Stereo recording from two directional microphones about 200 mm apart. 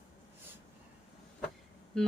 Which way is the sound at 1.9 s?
5° left (ahead or behind).